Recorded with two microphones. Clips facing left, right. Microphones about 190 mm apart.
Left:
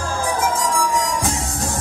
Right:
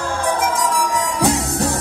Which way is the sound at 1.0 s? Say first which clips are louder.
Right 4 dB; 65° right (ahead or behind).